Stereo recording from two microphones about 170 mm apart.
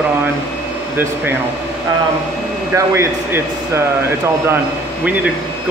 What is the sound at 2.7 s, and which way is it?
Speech, 15° right (ahead or behind).